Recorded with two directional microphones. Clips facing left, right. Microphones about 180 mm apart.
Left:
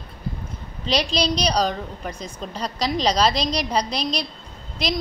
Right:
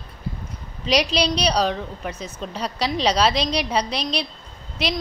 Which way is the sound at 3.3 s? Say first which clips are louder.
Right 1 dB; 35° left (ahead or behind).